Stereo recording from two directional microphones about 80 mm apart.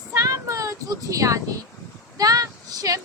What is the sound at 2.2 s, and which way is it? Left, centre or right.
Female singing, right.